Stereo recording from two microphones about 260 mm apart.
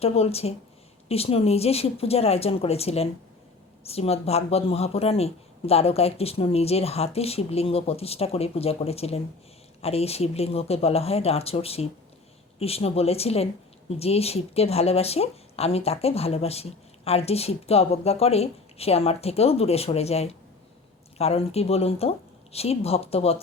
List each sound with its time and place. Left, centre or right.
0.0 s speech: left